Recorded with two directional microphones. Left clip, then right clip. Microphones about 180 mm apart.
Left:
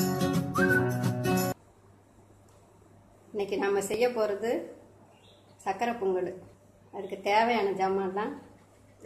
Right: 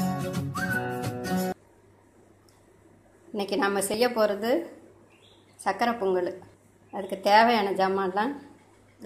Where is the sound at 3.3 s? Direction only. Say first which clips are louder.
Right 2 dB; 25° right (ahead or behind).